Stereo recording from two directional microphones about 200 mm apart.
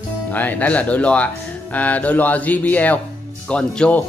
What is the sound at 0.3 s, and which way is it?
Speech, 10° left (ahead or behind).